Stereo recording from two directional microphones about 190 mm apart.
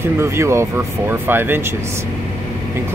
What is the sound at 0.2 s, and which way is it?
Speech, 15° right (ahead or behind).